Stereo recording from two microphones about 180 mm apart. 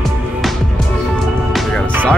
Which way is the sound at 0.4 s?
Centre (ahead or behind).